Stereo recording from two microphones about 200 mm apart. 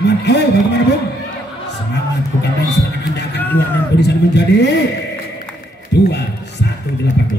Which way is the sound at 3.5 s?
60° left (ahead or behind).